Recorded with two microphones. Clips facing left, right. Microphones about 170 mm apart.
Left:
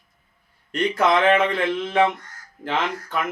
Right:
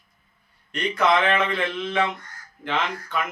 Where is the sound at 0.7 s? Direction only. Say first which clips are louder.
Left 2 dB; 40° left (ahead or behind).